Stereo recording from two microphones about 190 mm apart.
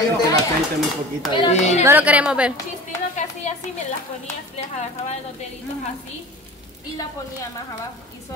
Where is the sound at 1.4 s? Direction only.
35° left (ahead or behind).